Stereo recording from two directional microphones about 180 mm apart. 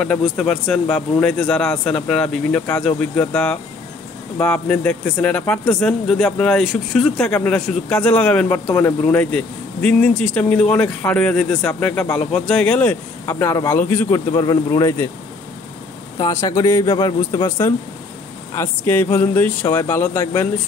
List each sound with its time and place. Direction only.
0.0 s a man's voice: 5° left (ahead or behind)
13.2 s speech: 15° left (ahead or behind)
16.2 s speech: 15° left (ahead or behind)